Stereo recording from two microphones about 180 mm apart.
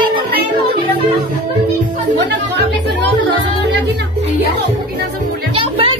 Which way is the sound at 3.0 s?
80° right.